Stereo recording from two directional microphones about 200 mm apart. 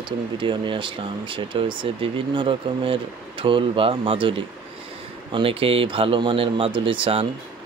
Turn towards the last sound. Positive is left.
turn(degrees=-25)  # may be behind; listen again after turning